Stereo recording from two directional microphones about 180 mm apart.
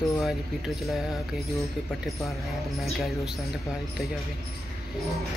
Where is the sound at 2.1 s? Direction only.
Centre (ahead or behind).